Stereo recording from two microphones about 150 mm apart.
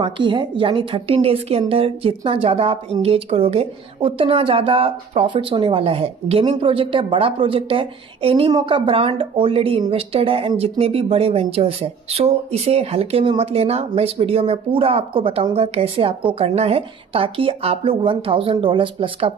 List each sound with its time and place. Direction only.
0.0 s speech: 35° right (ahead or behind)